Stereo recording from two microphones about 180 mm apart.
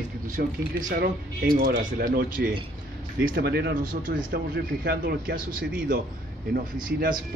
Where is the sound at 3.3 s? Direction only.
65° right (ahead or behind).